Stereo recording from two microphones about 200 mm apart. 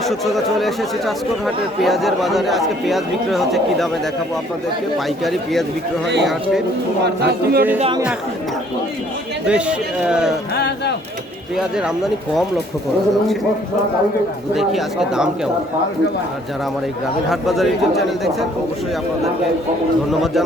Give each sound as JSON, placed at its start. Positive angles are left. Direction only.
{"t": 0.1, "sound": "speech", "side_deg": 0}
{"t": 5.2, "sound": "speech", "side_deg": 0}
{"t": 7.2, "sound": "speech", "side_deg": -50}
{"t": 9.5, "sound": "speech", "side_deg": -5}
{"t": 10.5, "sound": "speech", "side_deg": 55}
{"t": 14.5, "sound": "speech", "side_deg": 0}
{"t": 17.2, "sound": "speech", "side_deg": 0}